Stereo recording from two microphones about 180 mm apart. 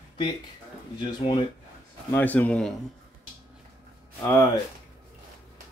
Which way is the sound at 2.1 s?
10° left (ahead or behind).